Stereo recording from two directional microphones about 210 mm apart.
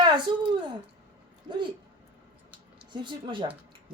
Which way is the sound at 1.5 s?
25° right (ahead or behind).